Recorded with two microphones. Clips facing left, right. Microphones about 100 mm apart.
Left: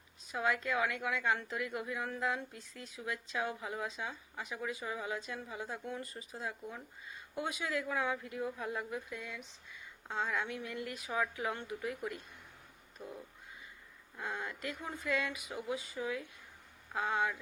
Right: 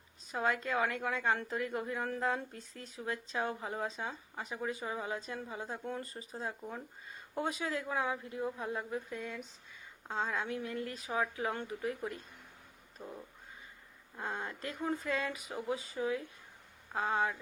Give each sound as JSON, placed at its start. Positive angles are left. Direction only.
{"t": 0.3, "sound": "a woman's voice", "side_deg": -35}
{"t": 10.1, "sound": "a woman's voice", "side_deg": -30}
{"t": 13.0, "sound": "a woman's voice", "side_deg": -35}
{"t": 14.2, "sound": "a woman's voice", "side_deg": -35}